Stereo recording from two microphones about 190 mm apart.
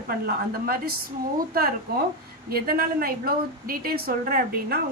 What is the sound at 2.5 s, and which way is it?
A woman's voice, 50° right (ahead or behind).